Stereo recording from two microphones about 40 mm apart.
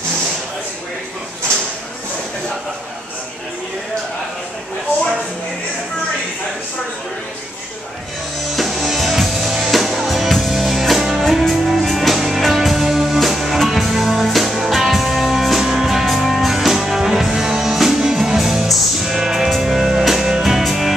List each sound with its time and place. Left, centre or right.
8.5 s music: centre